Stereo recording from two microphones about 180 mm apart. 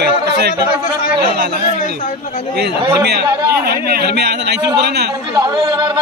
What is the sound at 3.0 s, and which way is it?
A man's voice, 60° right (ahead or behind).